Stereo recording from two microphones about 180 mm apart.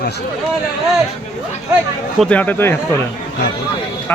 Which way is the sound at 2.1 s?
5° left (ahead or behind).